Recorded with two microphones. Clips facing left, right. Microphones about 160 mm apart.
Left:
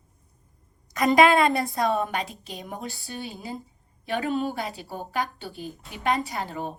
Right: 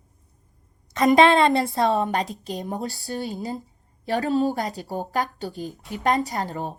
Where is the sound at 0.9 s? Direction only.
25° right (ahead or behind).